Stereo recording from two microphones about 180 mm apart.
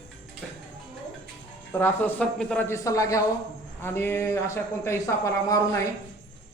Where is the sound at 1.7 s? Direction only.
10° left (ahead or behind).